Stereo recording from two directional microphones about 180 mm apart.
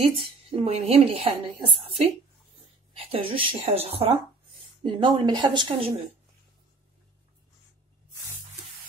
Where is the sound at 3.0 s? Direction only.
30° right (ahead or behind).